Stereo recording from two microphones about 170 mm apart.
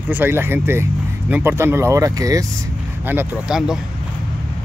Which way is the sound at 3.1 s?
5° right (ahead or behind).